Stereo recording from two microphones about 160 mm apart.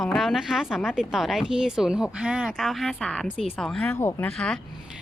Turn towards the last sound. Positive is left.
turn(degrees=5)  # may be behind; listen again after turning